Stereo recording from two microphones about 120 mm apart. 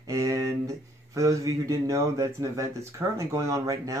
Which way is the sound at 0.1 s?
30° right (ahead or behind).